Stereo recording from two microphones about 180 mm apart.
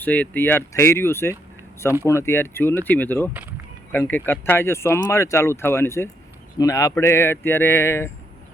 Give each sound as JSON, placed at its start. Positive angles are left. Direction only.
{"t": 0.0, "sound": "speech", "side_deg": 10}